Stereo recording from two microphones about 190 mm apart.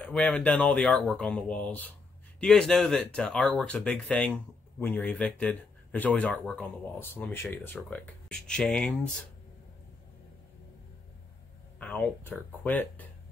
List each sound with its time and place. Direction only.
0.0 s speech: 5° left (ahead or behind)
11.8 s speech: 10° left (ahead or behind)